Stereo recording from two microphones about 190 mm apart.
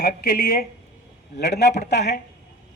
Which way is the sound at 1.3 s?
60° left (ahead or behind).